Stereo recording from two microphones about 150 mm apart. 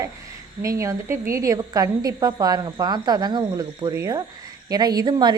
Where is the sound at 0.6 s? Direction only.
20° right (ahead or behind).